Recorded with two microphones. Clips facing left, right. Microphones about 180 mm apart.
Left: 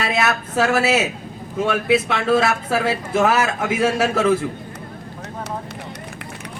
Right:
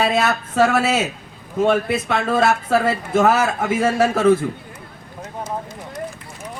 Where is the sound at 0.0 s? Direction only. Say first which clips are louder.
Right 3 dB; 65° left (ahead or behind).